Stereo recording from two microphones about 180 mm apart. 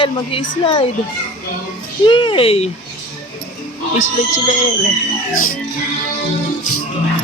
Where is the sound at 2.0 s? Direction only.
30° left (ahead or behind).